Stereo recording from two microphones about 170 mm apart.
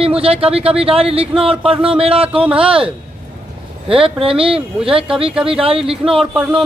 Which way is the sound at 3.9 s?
35° right (ahead or behind).